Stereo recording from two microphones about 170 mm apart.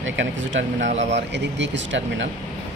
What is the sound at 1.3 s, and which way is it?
Speech, 90° right.